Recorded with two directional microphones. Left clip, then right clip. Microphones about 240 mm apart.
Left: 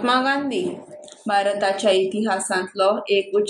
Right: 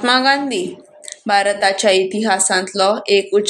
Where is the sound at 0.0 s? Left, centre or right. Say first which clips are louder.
Right 5 dB; right.